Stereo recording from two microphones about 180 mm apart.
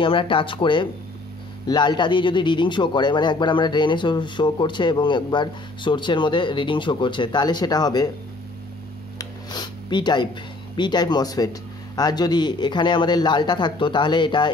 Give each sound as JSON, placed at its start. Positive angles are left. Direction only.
{"t": 0.0, "sound": "a man's voice", "side_deg": 30}
{"t": 9.2, "sound": "a sound", "side_deg": 25}
{"t": 10.8, "sound": "a man's voice", "side_deg": 25}